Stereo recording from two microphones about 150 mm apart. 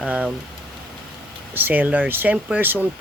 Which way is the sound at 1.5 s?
10° right (ahead or behind).